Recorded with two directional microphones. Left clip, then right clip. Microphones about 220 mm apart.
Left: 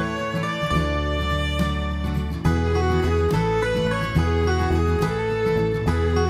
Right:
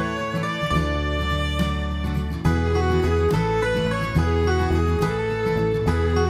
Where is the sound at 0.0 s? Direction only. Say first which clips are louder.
Even; centre (ahead or behind).